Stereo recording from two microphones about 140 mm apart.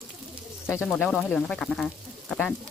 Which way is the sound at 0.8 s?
Centre (ahead or behind).